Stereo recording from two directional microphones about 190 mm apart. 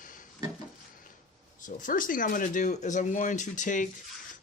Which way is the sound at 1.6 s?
45° left (ahead or behind).